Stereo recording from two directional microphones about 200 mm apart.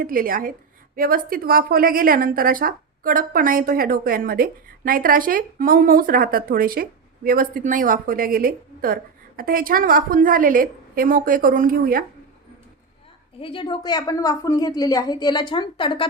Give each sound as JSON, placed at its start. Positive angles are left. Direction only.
{"t": 0.0, "sound": "a woman's voice", "side_deg": -45}
{"t": 13.4, "sound": "a woman's voice", "side_deg": 25}